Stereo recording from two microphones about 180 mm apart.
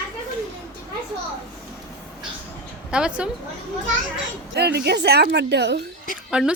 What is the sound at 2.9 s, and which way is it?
Speech, 5° right (ahead or behind).